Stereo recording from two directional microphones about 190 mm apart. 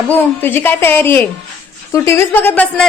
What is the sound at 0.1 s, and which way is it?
A woman's voice, 10° left (ahead or behind).